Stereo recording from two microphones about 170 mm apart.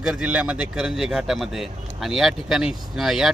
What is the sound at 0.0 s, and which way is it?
Speech, 5° right (ahead or behind).